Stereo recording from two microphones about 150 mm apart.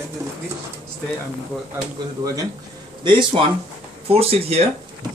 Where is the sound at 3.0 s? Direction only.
30° right (ahead or behind).